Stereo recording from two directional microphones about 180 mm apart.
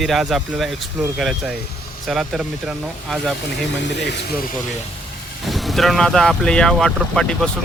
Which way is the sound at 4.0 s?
70° left (ahead or behind).